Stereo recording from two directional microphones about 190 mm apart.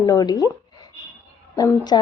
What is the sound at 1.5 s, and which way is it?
Speech, 20° left (ahead or behind).